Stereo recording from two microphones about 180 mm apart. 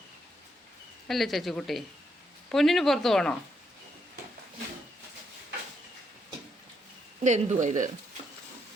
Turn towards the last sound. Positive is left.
turn(degrees=-45)  # may be behind; listen again after turning